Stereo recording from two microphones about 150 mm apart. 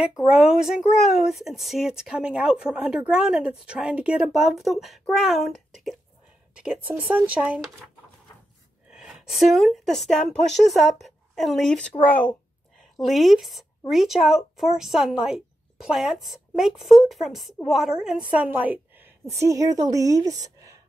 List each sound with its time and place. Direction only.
0.0 s speech: 5° right (ahead or behind)
8.9 s a woman's voice: 5° right (ahead or behind)
19.5 s speech: 25° right (ahead or behind)